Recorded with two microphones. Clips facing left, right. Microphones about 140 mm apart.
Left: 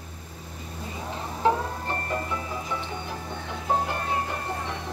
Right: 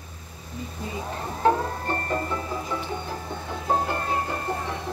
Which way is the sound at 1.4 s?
Centre (ahead or behind).